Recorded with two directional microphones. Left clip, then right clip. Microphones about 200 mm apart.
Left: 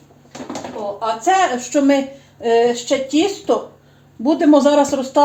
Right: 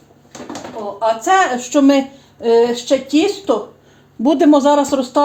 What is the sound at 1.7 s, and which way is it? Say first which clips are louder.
Speech: right 3 dB; 30° right (ahead or behind).